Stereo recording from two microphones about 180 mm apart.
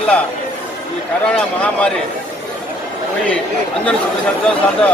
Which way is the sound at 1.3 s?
5° left (ahead or behind).